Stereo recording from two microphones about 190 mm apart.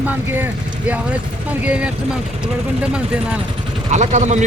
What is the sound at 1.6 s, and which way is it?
Speech, 5° right (ahead or behind).